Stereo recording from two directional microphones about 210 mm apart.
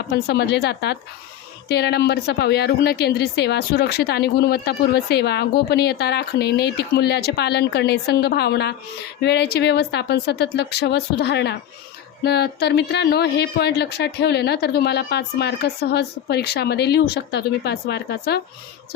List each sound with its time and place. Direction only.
0.1 s a woman's voice: 50° left (ahead or behind)